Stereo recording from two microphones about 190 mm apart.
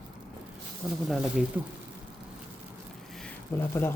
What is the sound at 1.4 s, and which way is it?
Speech, 5° right (ahead or behind).